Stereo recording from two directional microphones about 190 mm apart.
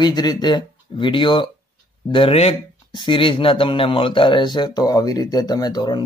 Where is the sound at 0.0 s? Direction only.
20° left (ahead or behind).